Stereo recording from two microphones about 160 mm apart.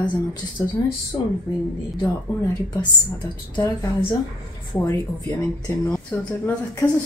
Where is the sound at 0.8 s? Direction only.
20° left (ahead or behind).